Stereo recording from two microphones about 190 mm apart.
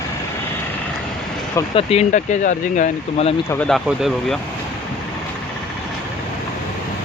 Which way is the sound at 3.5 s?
5° left (ahead or behind).